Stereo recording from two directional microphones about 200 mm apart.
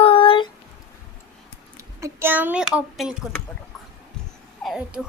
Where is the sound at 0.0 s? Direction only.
25° left (ahead or behind).